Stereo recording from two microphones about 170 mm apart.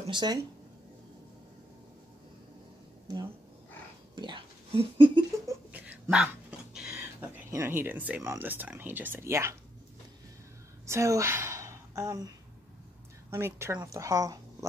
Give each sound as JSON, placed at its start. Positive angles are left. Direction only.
{"t": 0.0, "sound": "speech", "side_deg": -25}
{"t": 4.1, "sound": "whispering", "side_deg": -25}
{"t": 5.5, "sound": "a sound", "side_deg": -10}
{"t": 8.3, "sound": "a woman's voice", "side_deg": -10}
{"t": 10.9, "sound": "a woman's voice", "side_deg": -15}
{"t": 13.3, "sound": "a woman's voice", "side_deg": -15}